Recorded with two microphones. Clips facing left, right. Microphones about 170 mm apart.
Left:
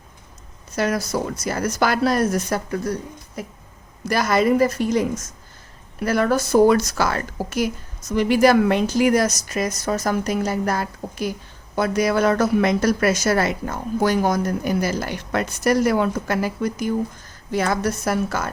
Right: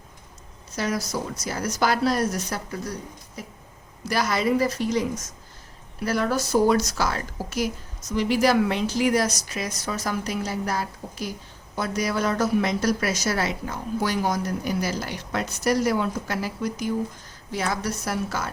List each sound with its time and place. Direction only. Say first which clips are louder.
0.8 s speech: left 5 dB; 55° left (ahead or behind)
4.1 s speech: left 5 dB; 50° left (ahead or behind)
6.1 s speech: left 5 dB; 55° left (ahead or behind)